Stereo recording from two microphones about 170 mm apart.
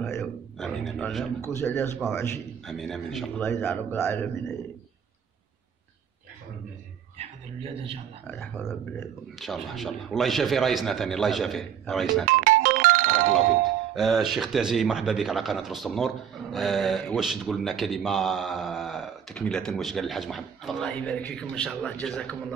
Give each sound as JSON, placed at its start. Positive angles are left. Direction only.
{"t": 0.2, "sound": "a man's voice", "side_deg": 0}
{"t": 1.5, "sound": "a man's voice", "side_deg": 15}
{"t": 2.6, "sound": "speech", "side_deg": 0}
{"t": 3.4, "sound": "a man's voice", "side_deg": 10}
{"t": 7.2, "sound": "a man's voice", "side_deg": -35}
{"t": 8.3, "sound": "a man's voice", "side_deg": 10}
{"t": 9.4, "sound": "speech", "side_deg": 0}
{"t": 12.3, "sound": "music", "side_deg": -55}
{"t": 13.9, "sound": "speech", "side_deg": 0}